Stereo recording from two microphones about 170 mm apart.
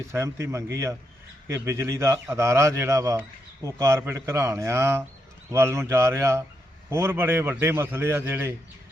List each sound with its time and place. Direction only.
0.1 s speech: 15° right (ahead or behind)